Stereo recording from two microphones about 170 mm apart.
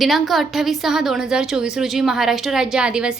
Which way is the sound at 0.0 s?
Centre (ahead or behind).